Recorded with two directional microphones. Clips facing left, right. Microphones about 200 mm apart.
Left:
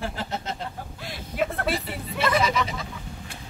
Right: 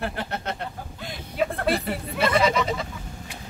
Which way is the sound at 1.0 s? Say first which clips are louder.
Right 1 dB; centre (ahead or behind).